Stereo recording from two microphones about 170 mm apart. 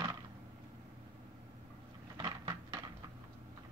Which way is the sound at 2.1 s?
30° right (ahead or behind).